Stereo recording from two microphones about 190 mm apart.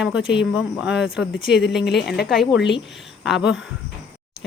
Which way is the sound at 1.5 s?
65° left (ahead or behind).